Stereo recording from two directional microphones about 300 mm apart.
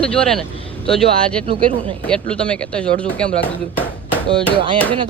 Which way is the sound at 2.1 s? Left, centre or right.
Centre.